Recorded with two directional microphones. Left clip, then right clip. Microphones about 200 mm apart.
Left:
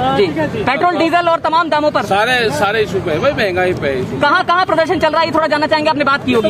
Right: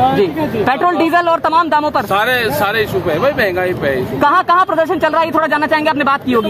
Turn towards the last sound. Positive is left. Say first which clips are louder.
# even
turn(degrees=-30)  # may be behind; listen again after turning